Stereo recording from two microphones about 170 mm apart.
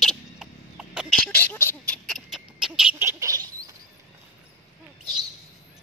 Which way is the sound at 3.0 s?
15° right (ahead or behind).